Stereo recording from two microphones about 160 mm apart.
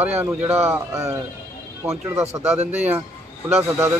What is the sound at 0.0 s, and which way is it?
A man's voice, 10° right (ahead or behind).